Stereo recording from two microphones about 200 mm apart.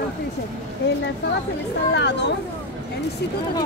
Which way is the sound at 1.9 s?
60° left (ahead or behind).